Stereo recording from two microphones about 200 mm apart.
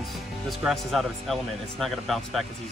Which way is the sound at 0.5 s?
Centre (ahead or behind).